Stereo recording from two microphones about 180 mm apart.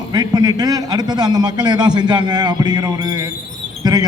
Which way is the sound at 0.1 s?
20° right (ahead or behind).